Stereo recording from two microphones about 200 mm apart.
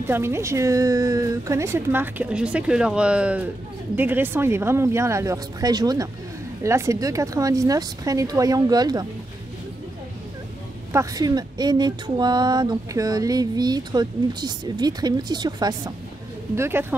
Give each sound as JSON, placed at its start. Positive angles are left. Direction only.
{"t": 0.0, "sound": "speech", "side_deg": -10}
{"t": 10.9, "sound": "speech", "side_deg": -15}